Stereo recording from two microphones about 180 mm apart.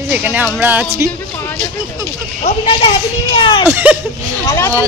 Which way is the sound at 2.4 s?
30° left (ahead or behind).